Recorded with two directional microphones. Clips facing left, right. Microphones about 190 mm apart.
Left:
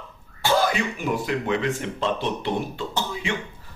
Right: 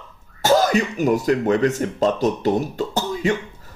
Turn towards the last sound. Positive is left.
turn(degrees=-40)  # may be behind; listen again after turning